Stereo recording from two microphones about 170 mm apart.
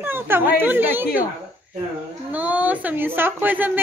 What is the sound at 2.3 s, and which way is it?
A woman's voice, 10° right (ahead or behind).